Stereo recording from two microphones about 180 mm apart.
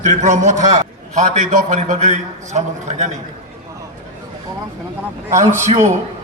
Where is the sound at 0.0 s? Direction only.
40° right (ahead or behind).